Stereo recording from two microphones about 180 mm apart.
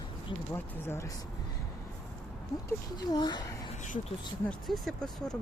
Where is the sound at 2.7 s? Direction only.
20° left (ahead or behind).